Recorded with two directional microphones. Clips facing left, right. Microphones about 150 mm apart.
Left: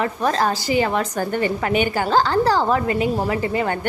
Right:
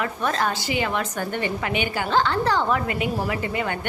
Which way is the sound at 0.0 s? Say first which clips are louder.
Left 4 dB; 35° left (ahead or behind).